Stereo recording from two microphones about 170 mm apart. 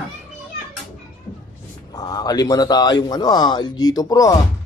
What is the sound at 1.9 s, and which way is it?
Speech, 20° left (ahead or behind).